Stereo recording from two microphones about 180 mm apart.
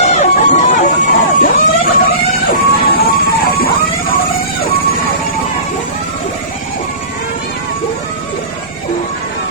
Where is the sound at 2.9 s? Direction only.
60° left (ahead or behind).